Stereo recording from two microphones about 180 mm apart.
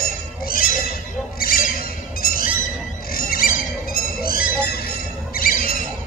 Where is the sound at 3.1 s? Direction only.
55° left (ahead or behind).